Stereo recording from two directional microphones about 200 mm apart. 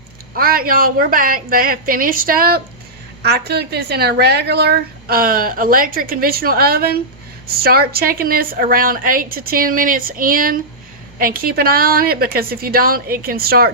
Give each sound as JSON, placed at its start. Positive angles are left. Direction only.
{"t": 0.3, "sound": "a woman's voice", "side_deg": -45}